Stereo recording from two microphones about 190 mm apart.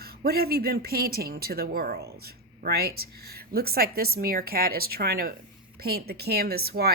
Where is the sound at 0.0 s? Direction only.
55° right (ahead or behind).